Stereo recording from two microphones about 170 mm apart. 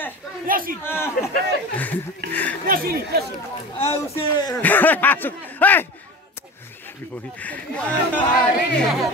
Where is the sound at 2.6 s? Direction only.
55° right (ahead or behind).